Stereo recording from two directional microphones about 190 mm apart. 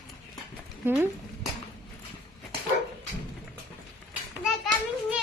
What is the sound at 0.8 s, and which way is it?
Speech, 10° right (ahead or behind).